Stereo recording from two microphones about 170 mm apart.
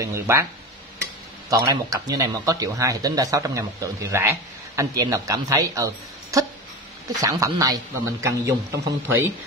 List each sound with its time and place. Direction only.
0.0 s speech: 15° right (ahead or behind)
1.5 s speech: 20° right (ahead or behind)